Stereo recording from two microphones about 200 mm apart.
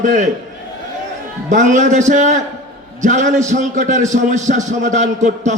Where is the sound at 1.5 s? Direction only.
40° right (ahead or behind).